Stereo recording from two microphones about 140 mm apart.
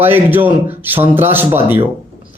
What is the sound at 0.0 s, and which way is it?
A man's voice, 15° right (ahead or behind).